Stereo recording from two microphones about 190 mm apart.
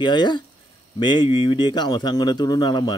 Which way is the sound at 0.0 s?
25° left (ahead or behind).